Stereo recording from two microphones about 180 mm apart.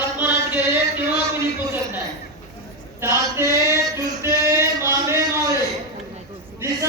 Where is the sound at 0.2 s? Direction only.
10° right (ahead or behind).